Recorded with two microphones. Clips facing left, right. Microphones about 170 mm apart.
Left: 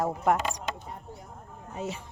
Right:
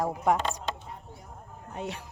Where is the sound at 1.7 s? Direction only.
Centre (ahead or behind).